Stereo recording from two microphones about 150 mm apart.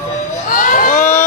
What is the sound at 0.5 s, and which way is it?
Crowd, 65° left (ahead or behind).